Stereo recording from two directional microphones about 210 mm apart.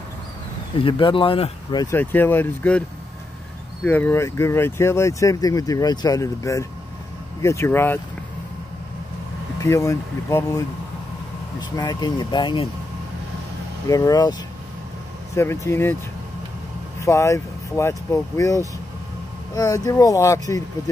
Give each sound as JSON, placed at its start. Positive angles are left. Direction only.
{"t": 0.7, "sound": "speech", "side_deg": 25}
{"t": 3.8, "sound": "speech", "side_deg": 10}
{"t": 9.6, "sound": "speech", "side_deg": 15}
{"t": 11.7, "sound": "speech", "side_deg": 20}
{"t": 13.8, "sound": "speech", "side_deg": 15}
{"t": 15.3, "sound": "speech", "side_deg": 15}
{"t": 17.0, "sound": "speech", "side_deg": 15}